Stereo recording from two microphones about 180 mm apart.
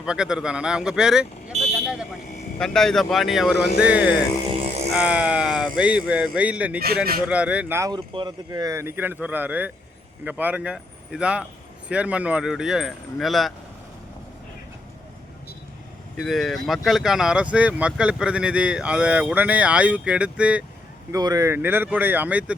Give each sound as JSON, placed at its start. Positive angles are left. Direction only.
{"t": 0.0, "sound": "speech", "side_deg": -5}
{"t": 2.6, "sound": "speech", "side_deg": 0}
{"t": 6.7, "sound": "speech", "side_deg": -55}
{"t": 7.3, "sound": "speech", "side_deg": -5}
{"t": 16.1, "sound": "speech", "side_deg": 0}
{"t": 21.1, "sound": "speech", "side_deg": -20}